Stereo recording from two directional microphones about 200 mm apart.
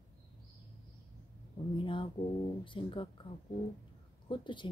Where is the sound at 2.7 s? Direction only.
25° left (ahead or behind).